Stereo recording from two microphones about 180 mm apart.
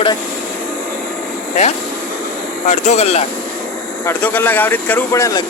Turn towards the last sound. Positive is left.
turn(degrees=20)  # may be behind; listen again after turning